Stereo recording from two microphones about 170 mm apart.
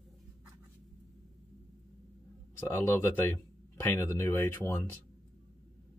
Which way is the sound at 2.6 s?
15° left (ahead or behind).